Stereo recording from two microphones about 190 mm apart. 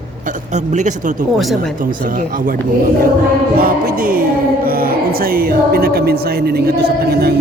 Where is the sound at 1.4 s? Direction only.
Centre (ahead or behind).